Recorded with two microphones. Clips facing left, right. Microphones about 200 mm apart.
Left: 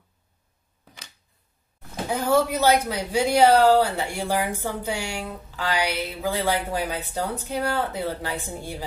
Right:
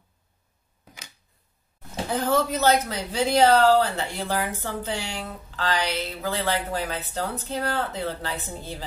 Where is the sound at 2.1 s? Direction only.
10° left (ahead or behind).